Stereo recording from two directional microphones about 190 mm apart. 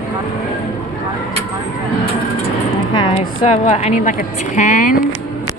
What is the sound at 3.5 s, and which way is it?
A woman's voice, 40° left (ahead or behind).